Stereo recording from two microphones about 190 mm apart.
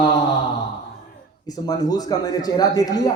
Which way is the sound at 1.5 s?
20° left (ahead or behind).